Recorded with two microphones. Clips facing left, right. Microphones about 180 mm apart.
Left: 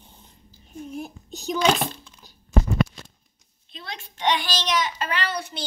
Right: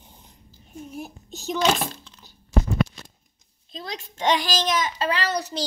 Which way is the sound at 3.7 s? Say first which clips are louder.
Right 4 dB; 40° right (ahead or behind).